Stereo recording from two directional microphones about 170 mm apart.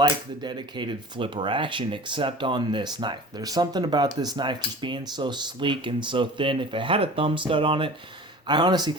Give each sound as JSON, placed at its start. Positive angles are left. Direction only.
{"t": 0.4, "sound": "speech", "side_deg": -25}